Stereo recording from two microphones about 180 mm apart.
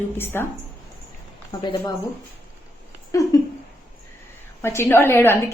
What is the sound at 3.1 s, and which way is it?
Speech, 20° left (ahead or behind).